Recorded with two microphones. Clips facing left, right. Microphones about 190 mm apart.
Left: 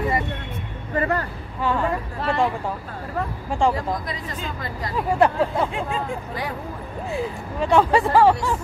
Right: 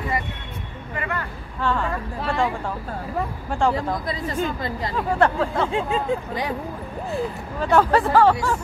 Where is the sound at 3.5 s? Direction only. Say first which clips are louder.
Left 1 dB; centre (ahead or behind).